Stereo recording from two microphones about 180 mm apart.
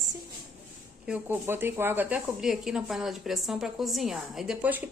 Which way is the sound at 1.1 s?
10° right (ahead or behind).